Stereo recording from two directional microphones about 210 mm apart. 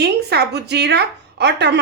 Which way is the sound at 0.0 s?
50° right (ahead or behind).